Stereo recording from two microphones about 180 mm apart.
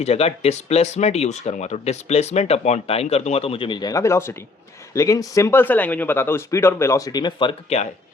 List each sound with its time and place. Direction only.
0.0 s speech: 35° left (ahead or behind)